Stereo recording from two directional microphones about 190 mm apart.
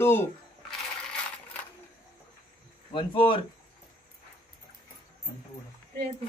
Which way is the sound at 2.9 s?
25° left (ahead or behind).